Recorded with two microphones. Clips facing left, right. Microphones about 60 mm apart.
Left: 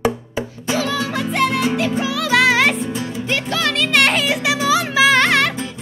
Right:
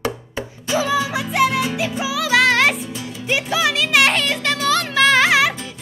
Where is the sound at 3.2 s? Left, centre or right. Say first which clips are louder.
Right 3 dB; centre.